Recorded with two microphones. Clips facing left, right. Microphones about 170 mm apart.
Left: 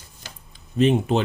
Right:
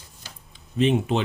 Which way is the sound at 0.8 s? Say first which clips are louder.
Left 3 dB; 40° left (ahead or behind).